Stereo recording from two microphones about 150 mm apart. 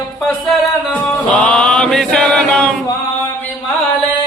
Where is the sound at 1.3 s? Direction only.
5° left (ahead or behind).